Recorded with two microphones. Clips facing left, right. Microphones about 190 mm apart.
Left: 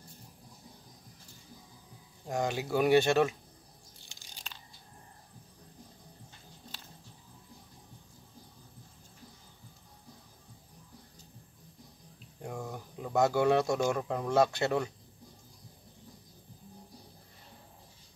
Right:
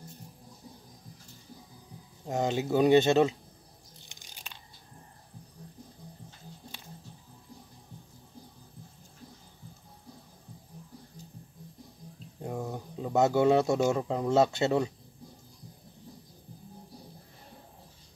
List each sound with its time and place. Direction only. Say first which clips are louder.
2.2 s speech: right 3 dB; 25° right (ahead or behind)
4.0 s crunch: even; 20° right (ahead or behind)
12.4 s a sound: right 4 dB; 20° right (ahead or behind)
13.8 s speech: right 4 dB; 20° right (ahead or behind)